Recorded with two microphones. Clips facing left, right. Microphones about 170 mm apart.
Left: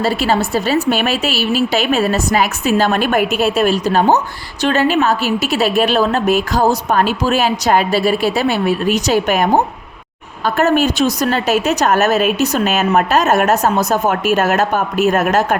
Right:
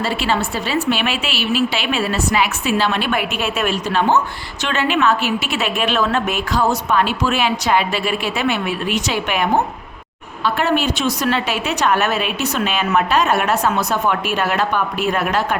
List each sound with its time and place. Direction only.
0.0 s a woman's voice: 40° left (ahead or behind)